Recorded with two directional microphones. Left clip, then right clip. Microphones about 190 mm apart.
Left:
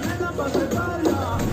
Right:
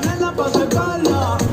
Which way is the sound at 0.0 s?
45° right (ahead or behind).